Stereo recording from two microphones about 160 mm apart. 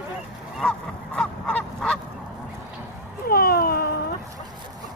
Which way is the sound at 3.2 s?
70° left (ahead or behind).